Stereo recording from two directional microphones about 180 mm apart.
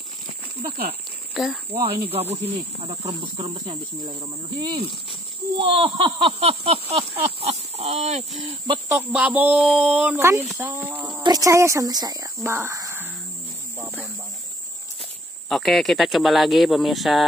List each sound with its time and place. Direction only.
1.3 s speech: 5° right (ahead or behind)
1.7 s speech: 30° right (ahead or behind)
8.8 s speech: 10° right (ahead or behind)
15.4 s speech: centre (ahead or behind)